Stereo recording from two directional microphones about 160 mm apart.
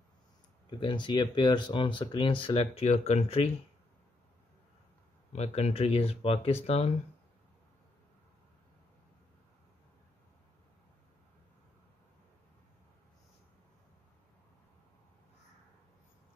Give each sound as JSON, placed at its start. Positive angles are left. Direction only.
{"t": 0.7, "sound": "speech", "side_deg": 30}
{"t": 5.3, "sound": "speech", "side_deg": 40}